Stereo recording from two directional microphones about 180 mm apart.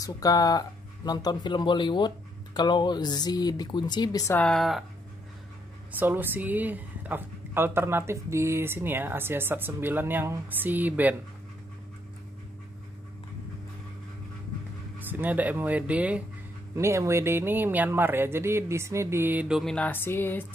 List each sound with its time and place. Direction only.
0.0 s speech: 20° left (ahead or behind)
4.3 s speech: 5° left (ahead or behind)
5.9 s a woman's voice: 10° right (ahead or behind)
15.0 s a woman's voice: 10° right (ahead or behind); by 20.4 s 10° left (ahead or behind)